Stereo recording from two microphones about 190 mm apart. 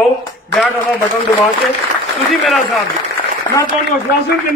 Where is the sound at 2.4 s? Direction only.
Centre (ahead or behind).